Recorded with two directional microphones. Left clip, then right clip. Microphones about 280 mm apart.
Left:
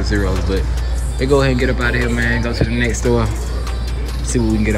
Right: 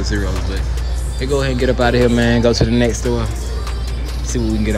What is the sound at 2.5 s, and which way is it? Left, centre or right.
Speech, centre.